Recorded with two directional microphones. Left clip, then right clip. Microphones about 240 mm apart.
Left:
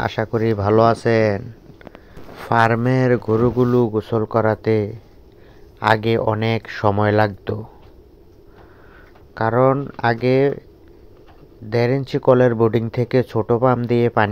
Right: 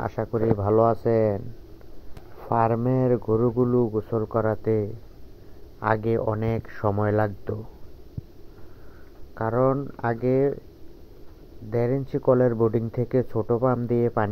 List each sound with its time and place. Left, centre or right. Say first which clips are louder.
0.0 s speech: left 5 dB; left
2.4 s speech: left 6 dB; left
3.2 s speech: left 5 dB; left
9.4 s speech: left 7 dB; left
10.1 s speech: left 4 dB; left
11.7 s speech: left 6 dB; left